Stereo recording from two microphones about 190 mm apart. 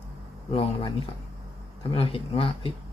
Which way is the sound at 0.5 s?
30° left (ahead or behind).